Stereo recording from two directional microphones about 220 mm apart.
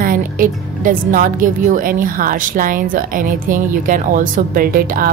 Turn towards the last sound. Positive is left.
turn(degrees=-40)  # may be behind; listen again after turning